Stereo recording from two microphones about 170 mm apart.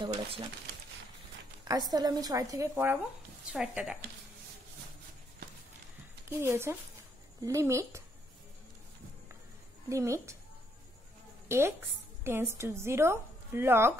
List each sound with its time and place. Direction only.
0.0 s a woman's voice: 25° right (ahead or behind)
1.6 s a woman's voice: 25° right (ahead or behind); by 4.0 s 5° right (ahead or behind)
6.2 s a woman's voice: 15° right (ahead or behind)
9.8 s a woman's voice: 15° right (ahead or behind)
11.4 s a woman's voice: 15° right (ahead or behind)